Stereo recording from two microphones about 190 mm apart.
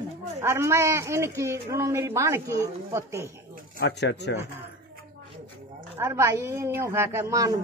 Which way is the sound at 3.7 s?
65° left (ahead or behind).